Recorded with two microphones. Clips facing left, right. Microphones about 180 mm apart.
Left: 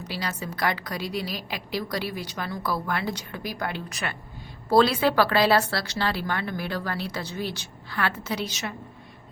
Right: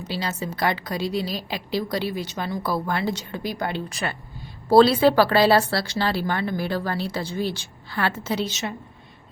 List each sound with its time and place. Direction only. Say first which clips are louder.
0.1 s a woman's voice: right 4 dB; 25° right (ahead or behind)